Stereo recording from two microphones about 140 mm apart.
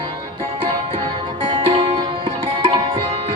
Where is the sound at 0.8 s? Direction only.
40° right (ahead or behind).